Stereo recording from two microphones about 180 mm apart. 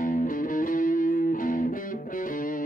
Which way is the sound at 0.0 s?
50° left (ahead or behind).